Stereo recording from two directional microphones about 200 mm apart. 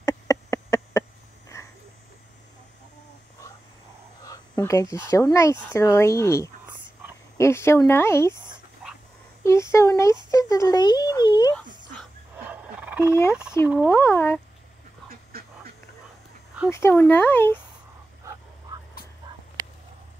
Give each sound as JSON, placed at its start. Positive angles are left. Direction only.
{"t": 0.0, "sound": "a sound", "side_deg": 15}
{"t": 4.2, "sound": "speech", "side_deg": 15}
{"t": 9.4, "sound": "speech", "side_deg": 15}
{"t": 10.3, "sound": "a sound", "side_deg": 15}
{"t": 12.4, "sound": "fowl", "side_deg": -10}
{"t": 13.1, "sound": "speech", "side_deg": 15}
{"t": 15.0, "sound": "dog", "side_deg": -50}
{"t": 16.7, "sound": "speech", "side_deg": 10}